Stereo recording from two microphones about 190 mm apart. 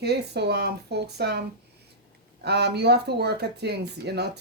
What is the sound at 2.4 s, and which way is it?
A man's voice, 60° right (ahead or behind).